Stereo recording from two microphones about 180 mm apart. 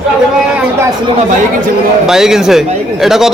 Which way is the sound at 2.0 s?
5° right (ahead or behind).